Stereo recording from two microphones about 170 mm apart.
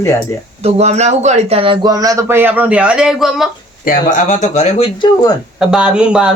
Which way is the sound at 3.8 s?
50° left (ahead or behind).